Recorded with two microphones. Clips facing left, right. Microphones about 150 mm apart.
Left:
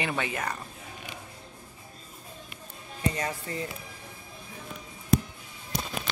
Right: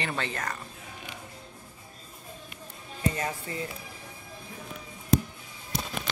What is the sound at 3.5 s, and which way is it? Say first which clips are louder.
Speech: left 1 dB; 35° left (ahead or behind).